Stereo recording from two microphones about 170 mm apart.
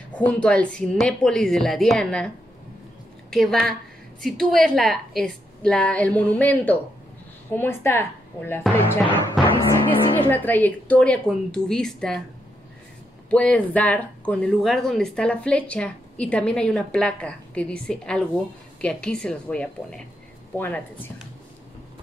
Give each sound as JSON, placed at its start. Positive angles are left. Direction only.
{"t": 0.1, "sound": "a woman's voice", "side_deg": 5}
{"t": 10.1, "sound": "speech", "side_deg": 10}
{"t": 13.3, "sound": "a woman's voice", "side_deg": 5}